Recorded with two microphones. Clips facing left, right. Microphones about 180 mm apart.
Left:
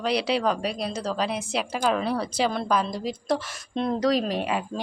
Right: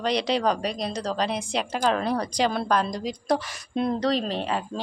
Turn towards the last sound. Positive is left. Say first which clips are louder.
# left 1 dB
turn(degrees=10)  # may be behind; listen again after turning